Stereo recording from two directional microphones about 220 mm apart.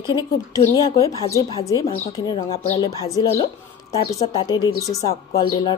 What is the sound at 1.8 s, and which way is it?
Speech, 30° left (ahead or behind).